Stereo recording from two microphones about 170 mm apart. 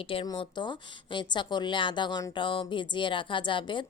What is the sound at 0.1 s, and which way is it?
A woman's voice, 30° left (ahead or behind).